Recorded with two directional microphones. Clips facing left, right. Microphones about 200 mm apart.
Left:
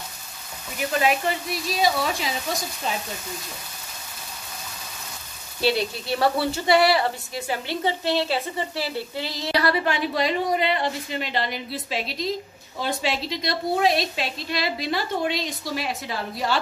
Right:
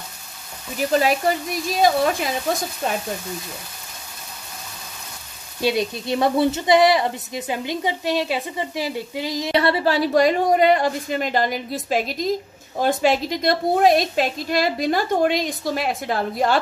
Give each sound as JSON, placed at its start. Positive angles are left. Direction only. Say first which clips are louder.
{"t": 0.9, "sound": "a woman's voice", "louder": "right 4 dB", "side_deg": -40}
{"t": 5.6, "sound": "speech", "louder": "right 2 dB", "side_deg": -15}
{"t": 9.6, "sound": "a woman's voice", "louder": "right 4 dB", "side_deg": -30}